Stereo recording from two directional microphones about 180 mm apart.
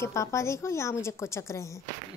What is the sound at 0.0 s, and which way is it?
A woman's voice, 15° left (ahead or behind).